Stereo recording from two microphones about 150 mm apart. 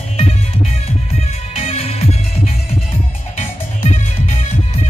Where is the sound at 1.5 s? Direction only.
40° left (ahead or behind).